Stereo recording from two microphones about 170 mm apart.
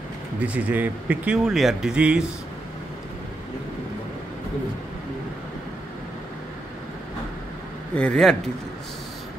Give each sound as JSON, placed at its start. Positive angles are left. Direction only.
{"t": 0.4, "sound": "speech", "side_deg": -10}
{"t": 7.9, "sound": "a man's voice", "side_deg": 5}